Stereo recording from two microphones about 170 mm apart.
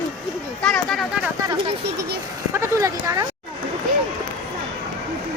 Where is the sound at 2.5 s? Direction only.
15° right (ahead or behind).